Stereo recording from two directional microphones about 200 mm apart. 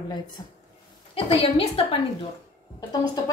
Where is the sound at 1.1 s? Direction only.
30° left (ahead or behind).